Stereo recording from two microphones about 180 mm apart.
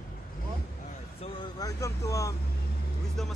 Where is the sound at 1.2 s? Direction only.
25° left (ahead or behind).